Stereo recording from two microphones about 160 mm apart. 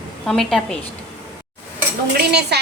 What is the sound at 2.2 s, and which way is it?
Speech, 90° right.